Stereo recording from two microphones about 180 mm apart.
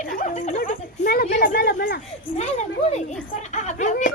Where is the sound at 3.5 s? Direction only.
40° left (ahead or behind).